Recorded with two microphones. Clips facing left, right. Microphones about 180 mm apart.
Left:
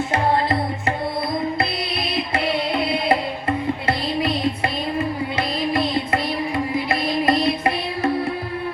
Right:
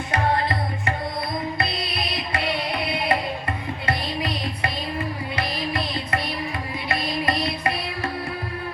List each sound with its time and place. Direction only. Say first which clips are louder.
2.3 s music: left 4 dB; 25° left (ahead or behind)